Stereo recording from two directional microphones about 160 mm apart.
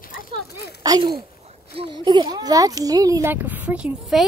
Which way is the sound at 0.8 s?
25° right (ahead or behind).